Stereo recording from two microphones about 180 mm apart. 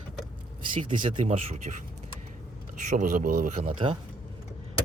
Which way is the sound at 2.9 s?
50° right (ahead or behind).